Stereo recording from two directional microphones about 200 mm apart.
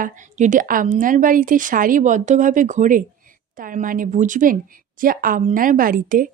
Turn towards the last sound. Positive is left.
turn(degrees=-45)  # may be behind; listen again after turning